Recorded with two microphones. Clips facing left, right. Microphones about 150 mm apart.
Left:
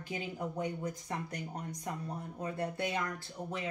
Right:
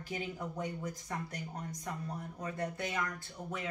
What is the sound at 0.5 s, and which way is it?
Speech, 10° left (ahead or behind).